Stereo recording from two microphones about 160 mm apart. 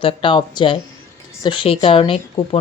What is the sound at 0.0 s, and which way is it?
Speech, 30° left (ahead or behind).